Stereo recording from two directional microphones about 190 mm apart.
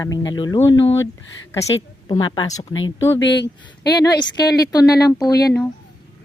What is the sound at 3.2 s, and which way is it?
Speech, 65° left (ahead or behind).